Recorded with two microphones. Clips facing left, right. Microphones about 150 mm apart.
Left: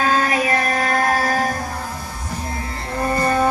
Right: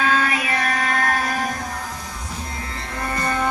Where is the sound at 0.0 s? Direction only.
40° left (ahead or behind).